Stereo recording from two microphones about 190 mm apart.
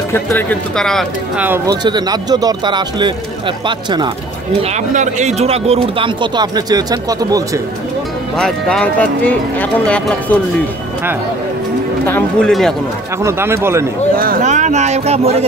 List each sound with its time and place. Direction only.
0.1 s speech: 10° left (ahead or behind)
1.7 s speech: 20° right (ahead or behind)
4.6 s speech: 40° right (ahead or behind); by 7.6 s 20° right (ahead or behind)
8.4 s speech: 5° left (ahead or behind)
12.1 s speech: 5° left (ahead or behind)
13.2 s speech: 15° right (ahead or behind)
14.1 s speech: 50° right (ahead or behind); by 15.4 s 35° right (ahead or behind)